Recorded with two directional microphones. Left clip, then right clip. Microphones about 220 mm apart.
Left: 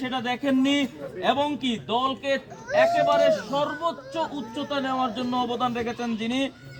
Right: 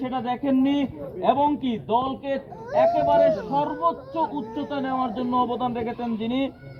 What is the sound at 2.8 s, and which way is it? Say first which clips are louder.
Speech: right 2 dB; 50° left (ahead or behind).